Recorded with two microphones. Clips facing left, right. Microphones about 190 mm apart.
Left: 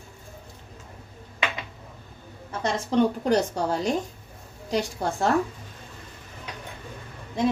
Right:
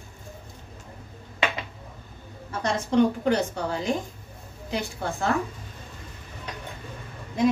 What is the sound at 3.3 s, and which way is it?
A woman's voice, 40° left (ahead or behind).